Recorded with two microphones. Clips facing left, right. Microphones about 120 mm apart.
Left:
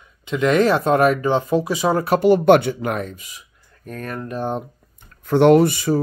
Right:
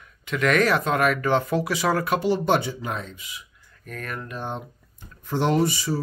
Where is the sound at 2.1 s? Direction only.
50° left (ahead or behind).